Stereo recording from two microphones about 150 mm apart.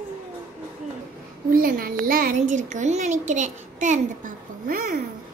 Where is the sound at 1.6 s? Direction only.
70° right (ahead or behind).